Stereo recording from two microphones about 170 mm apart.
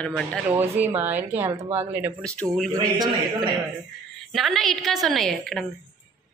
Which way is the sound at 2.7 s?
25° right (ahead or behind).